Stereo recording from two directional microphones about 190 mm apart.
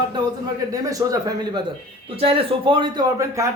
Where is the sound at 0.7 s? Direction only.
20° right (ahead or behind).